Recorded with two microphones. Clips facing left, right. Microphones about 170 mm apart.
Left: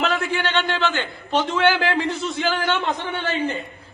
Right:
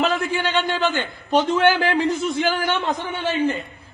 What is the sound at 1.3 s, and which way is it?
A man's voice, 15° right (ahead or behind).